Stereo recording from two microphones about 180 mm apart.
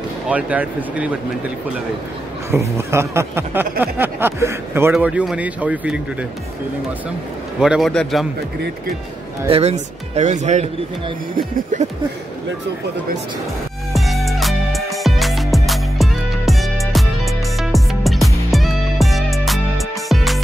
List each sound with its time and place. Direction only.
0.3 s speech: 10° right (ahead or behind)
2.5 s speech: 15° right (ahead or behind)
7.6 s a man's voice: centre (ahead or behind)
9.5 s speech: 35° right (ahead or behind)
11.7 s speech: 40° right (ahead or behind)
13.9 s music: centre (ahead or behind)